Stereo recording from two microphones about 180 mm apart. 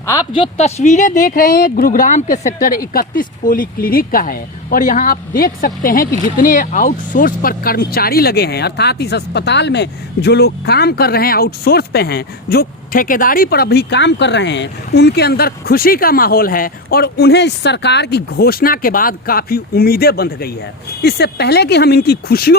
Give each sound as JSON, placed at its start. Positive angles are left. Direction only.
{"t": 0.0, "sound": "speech", "side_deg": 15}
{"t": 0.5, "sound": "speech", "side_deg": 40}